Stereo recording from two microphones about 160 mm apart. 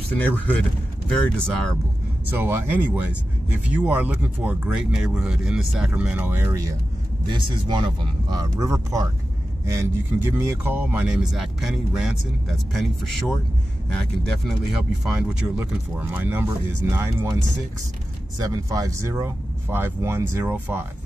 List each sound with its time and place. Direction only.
0.1 s speech: 10° left (ahead or behind)
2.3 s speech: 15° right (ahead or behind)
7.2 s speech: 30° right (ahead or behind); by 12.8 s centre (ahead or behind)
13.9 s speech: centre (ahead or behind); by 17.4 s 15° right (ahead or behind)
18.4 s speech: 20° right (ahead or behind)